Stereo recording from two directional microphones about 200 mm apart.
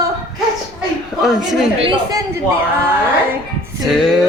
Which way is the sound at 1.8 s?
20° right (ahead or behind).